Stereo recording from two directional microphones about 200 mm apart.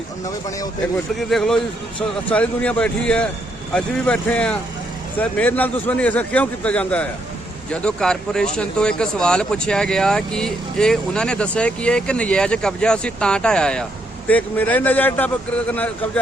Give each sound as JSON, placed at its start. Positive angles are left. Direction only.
{"t": 0.3, "sound": "a man's voice", "side_deg": 15}
{"t": 1.3, "sound": "a man's voice", "side_deg": 0}